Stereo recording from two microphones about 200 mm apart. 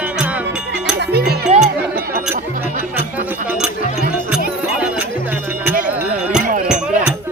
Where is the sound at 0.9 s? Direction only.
55° right (ahead or behind).